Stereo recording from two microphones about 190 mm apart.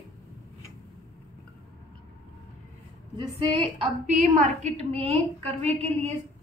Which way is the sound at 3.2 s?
25° right (ahead or behind).